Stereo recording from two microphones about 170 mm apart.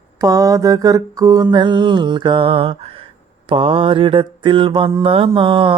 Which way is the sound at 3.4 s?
30° right (ahead or behind).